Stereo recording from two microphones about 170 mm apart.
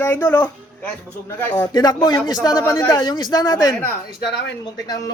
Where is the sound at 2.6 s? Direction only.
15° left (ahead or behind).